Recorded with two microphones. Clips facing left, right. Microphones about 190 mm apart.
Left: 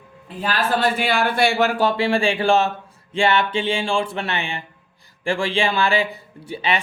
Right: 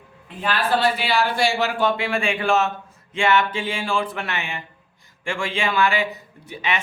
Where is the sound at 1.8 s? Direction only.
35° left (ahead or behind).